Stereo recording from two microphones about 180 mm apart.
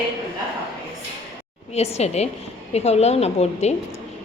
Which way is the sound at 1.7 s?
35° left (ahead or behind).